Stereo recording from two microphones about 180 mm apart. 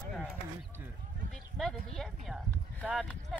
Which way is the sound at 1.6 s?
Centre (ahead or behind).